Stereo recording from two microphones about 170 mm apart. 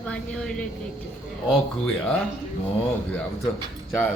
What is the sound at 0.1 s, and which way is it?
Speech, 5° left (ahead or behind).